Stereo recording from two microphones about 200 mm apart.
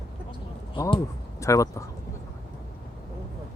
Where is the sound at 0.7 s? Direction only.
25° left (ahead or behind).